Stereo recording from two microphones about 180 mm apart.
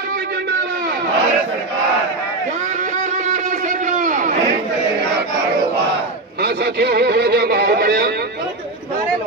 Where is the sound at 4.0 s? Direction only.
45° right (ahead or behind).